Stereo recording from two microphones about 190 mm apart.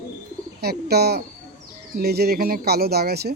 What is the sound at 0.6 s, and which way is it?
Speech, 55° right (ahead or behind).